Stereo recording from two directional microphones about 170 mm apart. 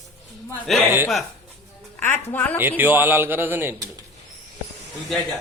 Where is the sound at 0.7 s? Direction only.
5° left (ahead or behind).